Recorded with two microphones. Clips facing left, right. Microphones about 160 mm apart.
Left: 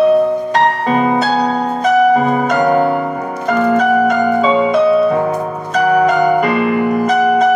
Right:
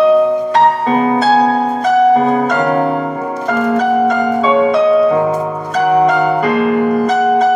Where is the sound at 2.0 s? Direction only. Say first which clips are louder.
Right 3 dB; 30° right (ahead or behind).